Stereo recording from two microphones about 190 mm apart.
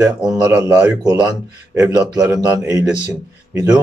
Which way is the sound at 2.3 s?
10° right (ahead or behind).